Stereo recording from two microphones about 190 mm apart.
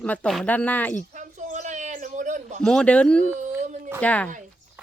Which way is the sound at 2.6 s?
5° left (ahead or behind).